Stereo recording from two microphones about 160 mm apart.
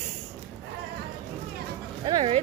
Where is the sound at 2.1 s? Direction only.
30° right (ahead or behind).